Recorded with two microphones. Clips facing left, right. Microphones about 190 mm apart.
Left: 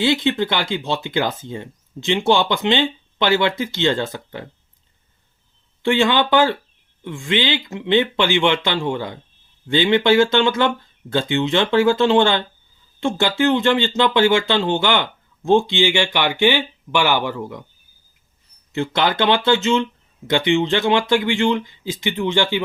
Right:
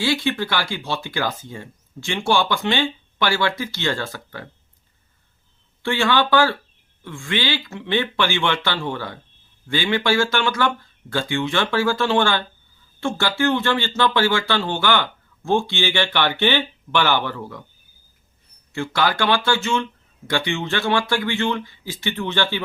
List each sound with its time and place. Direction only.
0.0 s speech: 20° left (ahead or behind)
5.8 s speech: 20° left (ahead or behind)
18.7 s speech: 20° left (ahead or behind)